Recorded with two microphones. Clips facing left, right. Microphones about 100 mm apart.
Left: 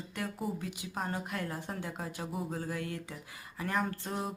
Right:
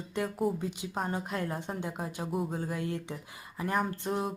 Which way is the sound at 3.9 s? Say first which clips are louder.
Right 5 dB; 20° right (ahead or behind).